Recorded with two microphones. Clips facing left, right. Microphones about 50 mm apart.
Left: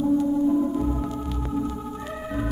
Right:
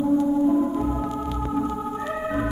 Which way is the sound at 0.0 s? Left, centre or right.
Centre.